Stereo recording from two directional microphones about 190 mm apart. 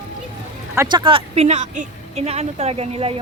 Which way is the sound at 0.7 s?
20° right (ahead or behind).